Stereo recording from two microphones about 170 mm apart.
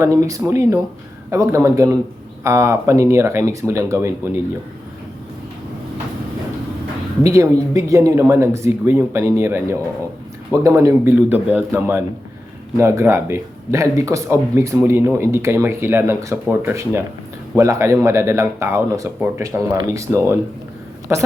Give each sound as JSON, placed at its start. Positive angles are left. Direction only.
{"t": 0.0, "sound": "speech", "side_deg": -20}
{"t": 7.3, "sound": "speech", "side_deg": -20}